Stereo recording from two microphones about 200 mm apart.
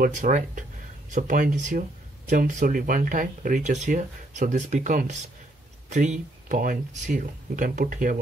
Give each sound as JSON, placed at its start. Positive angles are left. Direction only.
{"t": 0.0, "sound": "speech", "side_deg": -40}